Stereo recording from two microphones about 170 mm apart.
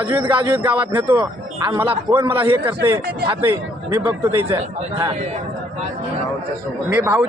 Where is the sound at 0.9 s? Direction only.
30° right (ahead or behind).